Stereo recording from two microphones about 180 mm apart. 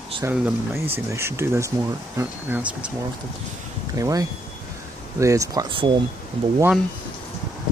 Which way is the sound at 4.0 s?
20° right (ahead or behind).